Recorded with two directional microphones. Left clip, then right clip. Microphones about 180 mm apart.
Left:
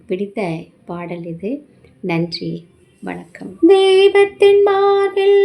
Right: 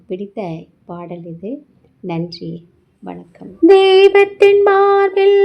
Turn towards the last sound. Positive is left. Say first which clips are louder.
# right 2 dB
turn(degrees=-25)  # may be behind; listen again after turning